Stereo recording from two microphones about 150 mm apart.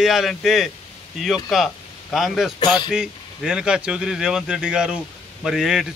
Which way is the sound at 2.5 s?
30° left (ahead or behind).